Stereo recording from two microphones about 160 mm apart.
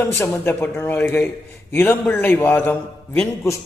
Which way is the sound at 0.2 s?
15° left (ahead or behind).